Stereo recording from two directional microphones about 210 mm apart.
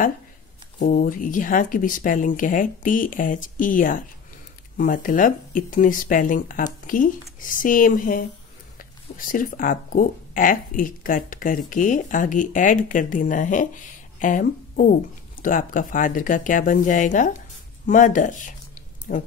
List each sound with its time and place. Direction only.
0.7 s speech: 40° left (ahead or behind)